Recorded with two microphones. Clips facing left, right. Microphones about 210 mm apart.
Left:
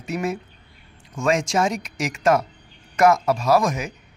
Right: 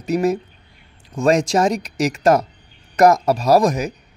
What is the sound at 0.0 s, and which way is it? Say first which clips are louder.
Speech: right 7 dB; 40° right (ahead or behind).